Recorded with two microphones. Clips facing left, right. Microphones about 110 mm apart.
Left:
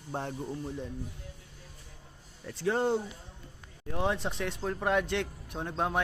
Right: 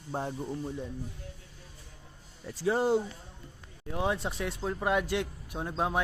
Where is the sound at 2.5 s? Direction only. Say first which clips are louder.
Right 2 dB; 5° right (ahead or behind).